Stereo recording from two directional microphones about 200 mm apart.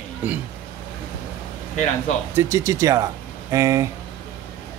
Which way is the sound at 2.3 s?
15° right (ahead or behind).